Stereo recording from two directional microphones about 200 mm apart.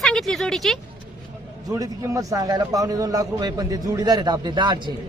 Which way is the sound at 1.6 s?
15° right (ahead or behind).